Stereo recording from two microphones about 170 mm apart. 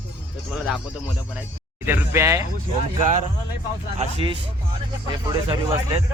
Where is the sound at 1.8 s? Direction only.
15° right (ahead or behind).